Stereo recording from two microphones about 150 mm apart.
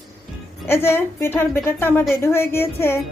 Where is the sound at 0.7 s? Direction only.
15° left (ahead or behind).